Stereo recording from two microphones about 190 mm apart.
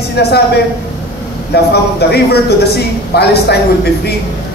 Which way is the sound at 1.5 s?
60° left (ahead or behind).